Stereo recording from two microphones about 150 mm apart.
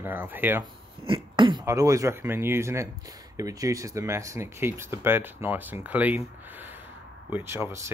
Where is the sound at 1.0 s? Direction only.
35° right (ahead or behind).